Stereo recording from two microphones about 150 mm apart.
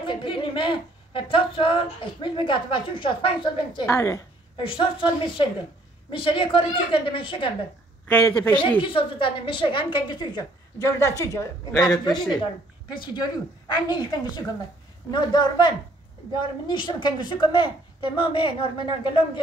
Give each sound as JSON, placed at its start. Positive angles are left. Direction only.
{"t": 0.0, "sound": "a woman's voice", "side_deg": 35}
{"t": 3.8, "sound": "a woman's voice", "side_deg": 20}
{"t": 4.6, "sound": "a woman's voice", "side_deg": 35}
{"t": 8.1, "sound": "a woman's voice", "side_deg": 15}
{"t": 8.8, "sound": "a woman's voice", "side_deg": 35}